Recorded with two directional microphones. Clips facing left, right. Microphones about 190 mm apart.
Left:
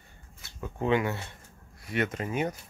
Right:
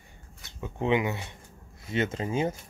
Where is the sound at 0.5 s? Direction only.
20° right (ahead or behind).